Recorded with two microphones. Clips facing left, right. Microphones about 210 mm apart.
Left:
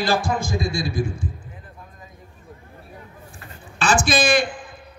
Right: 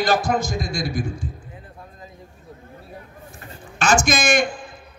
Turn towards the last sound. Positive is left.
turn(degrees=35)  # may be behind; listen again after turning